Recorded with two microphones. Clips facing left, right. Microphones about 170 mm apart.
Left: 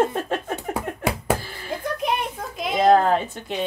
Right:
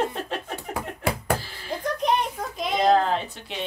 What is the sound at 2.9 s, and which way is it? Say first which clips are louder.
Speech: left 5 dB; 50° left (ahead or behind).